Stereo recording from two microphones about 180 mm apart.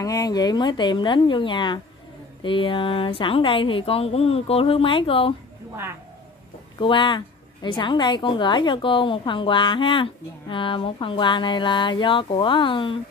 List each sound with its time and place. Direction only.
0.0 s a woman's voice: 20° left (ahead or behind)
6.8 s a woman's voice: 25° left (ahead or behind)